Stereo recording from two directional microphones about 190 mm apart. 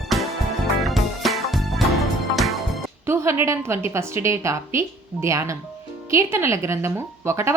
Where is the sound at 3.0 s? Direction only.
15° right (ahead or behind).